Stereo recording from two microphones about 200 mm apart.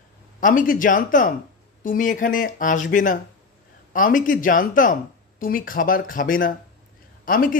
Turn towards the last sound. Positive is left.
turn(degrees=45)  # may be behind; listen again after turning